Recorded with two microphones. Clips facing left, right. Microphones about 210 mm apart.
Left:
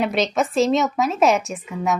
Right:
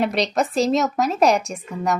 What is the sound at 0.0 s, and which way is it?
A woman's voice, centre (ahead or behind).